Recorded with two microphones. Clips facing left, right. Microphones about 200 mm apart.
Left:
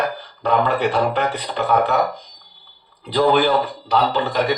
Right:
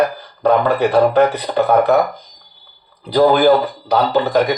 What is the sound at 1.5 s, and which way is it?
Speech, 50° right (ahead or behind).